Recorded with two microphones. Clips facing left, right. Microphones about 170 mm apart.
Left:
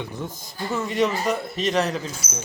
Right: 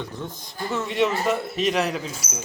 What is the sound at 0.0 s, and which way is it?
A man's voice, 10° left (ahead or behind).